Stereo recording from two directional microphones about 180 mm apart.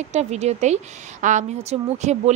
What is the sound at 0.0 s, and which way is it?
A woman's voice, 40° right (ahead or behind).